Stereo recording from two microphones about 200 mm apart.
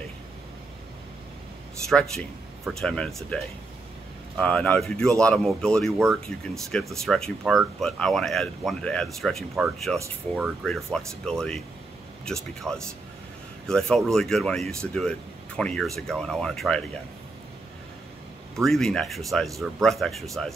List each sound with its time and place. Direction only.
1.9 s speech: centre (ahead or behind)
18.6 s speech: centre (ahead or behind)